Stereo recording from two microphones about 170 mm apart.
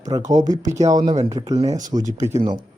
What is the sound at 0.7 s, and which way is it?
Speech, 20° right (ahead or behind).